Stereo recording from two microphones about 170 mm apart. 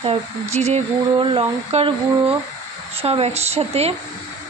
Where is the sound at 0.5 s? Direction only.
40° right (ahead or behind).